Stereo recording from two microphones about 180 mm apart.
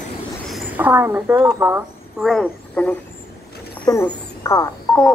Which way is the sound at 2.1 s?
Centre (ahead or behind).